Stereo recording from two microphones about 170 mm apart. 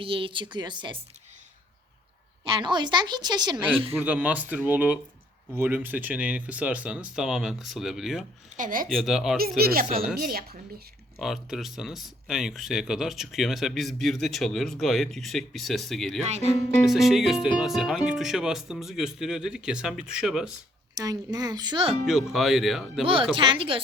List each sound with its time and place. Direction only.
0.0 s a woman's voice: 30° right (ahead or behind)
2.4 s a woman's voice: 25° right (ahead or behind)
4.0 s speech: 10° right (ahead or behind)
8.4 s speech: 50° right (ahead or behind)
8.9 s speech: centre (ahead or behind)
9.4 s speech: 60° right (ahead or behind)
11.2 s speech: centre (ahead or behind)
16.2 s speech: 40° right (ahead or behind)
16.8 s speech: centre (ahead or behind)
21.0 s a woman's voice: 20° right (ahead or behind)
22.3 s speech: centre (ahead or behind)
23.3 s speech: 30° right (ahead or behind)